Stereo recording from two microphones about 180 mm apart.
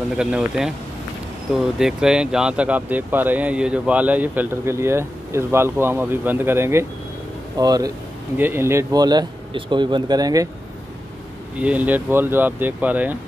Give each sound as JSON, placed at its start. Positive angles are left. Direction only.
{"t": 0.2, "sound": "speech", "side_deg": -5}
{"t": 11.5, "sound": "speech", "side_deg": -10}